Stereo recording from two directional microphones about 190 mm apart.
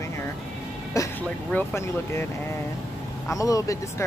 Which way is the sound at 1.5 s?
10° left (ahead or behind).